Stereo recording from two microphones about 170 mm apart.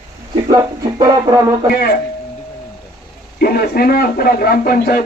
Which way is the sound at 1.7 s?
60° left (ahead or behind).